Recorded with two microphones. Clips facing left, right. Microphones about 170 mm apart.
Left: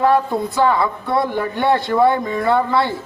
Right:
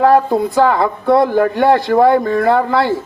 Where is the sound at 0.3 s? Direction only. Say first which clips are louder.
Right 4 dB; 45° right (ahead or behind).